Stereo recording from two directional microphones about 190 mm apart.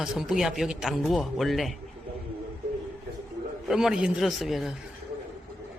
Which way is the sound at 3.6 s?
5° right (ahead or behind).